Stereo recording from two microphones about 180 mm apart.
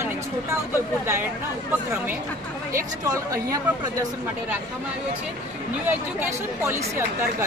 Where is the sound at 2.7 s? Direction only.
15° right (ahead or behind).